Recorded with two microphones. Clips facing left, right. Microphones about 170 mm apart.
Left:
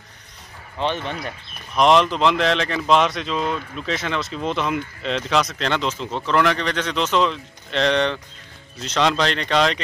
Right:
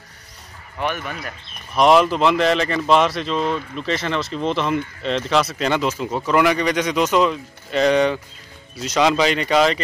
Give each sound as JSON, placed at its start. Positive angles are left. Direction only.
{"t": 0.7, "sound": "speech", "side_deg": 25}
{"t": 1.8, "sound": "speech", "side_deg": -5}